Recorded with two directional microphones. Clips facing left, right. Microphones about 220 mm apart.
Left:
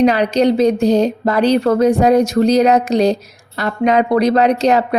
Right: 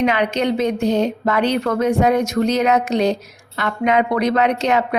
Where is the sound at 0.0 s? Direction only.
35° left (ahead or behind).